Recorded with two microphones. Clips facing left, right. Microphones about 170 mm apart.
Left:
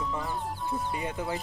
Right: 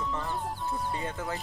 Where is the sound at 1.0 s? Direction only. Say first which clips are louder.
Left 2 dB; 15° left (ahead or behind).